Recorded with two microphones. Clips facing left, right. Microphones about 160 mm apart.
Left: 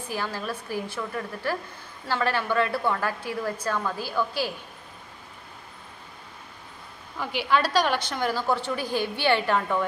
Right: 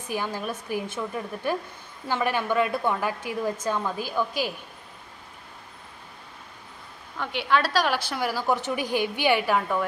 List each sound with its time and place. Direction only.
0.1 s a woman's voice: 15° right (ahead or behind)
7.2 s a woman's voice: centre (ahead or behind)